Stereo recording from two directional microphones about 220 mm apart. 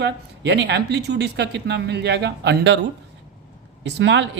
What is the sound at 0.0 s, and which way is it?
Speech, 50° right (ahead or behind).